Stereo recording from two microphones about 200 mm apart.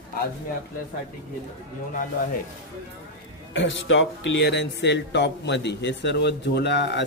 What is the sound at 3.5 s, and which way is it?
A man's voice, 70° left (ahead or behind).